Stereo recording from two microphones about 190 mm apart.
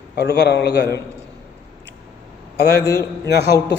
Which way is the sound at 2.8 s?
20° left (ahead or behind).